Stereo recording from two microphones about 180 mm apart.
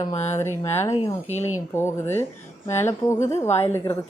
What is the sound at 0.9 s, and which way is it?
Speech, 40° left (ahead or behind).